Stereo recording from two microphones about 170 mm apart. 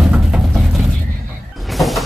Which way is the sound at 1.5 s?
Centre (ahead or behind).